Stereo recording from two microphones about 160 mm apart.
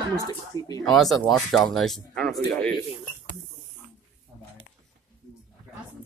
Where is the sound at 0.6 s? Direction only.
20° left (ahead or behind).